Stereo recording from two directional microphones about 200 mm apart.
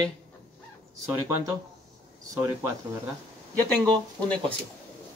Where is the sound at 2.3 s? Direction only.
15° right (ahead or behind).